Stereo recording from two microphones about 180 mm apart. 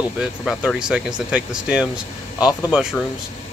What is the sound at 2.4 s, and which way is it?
Speech, 20° left (ahead or behind).